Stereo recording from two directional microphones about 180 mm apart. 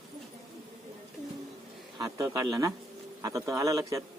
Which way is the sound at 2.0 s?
20° right (ahead or behind).